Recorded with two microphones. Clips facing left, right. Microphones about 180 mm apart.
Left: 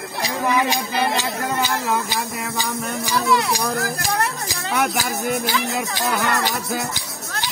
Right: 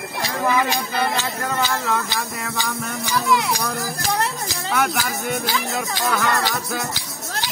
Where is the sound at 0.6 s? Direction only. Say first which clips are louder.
Left 1 dB; 15° left (ahead or behind).